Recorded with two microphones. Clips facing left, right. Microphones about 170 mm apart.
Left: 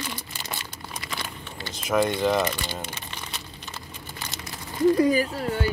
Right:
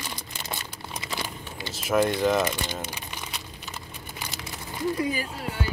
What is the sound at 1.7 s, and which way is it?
Speech, 5° right (ahead or behind).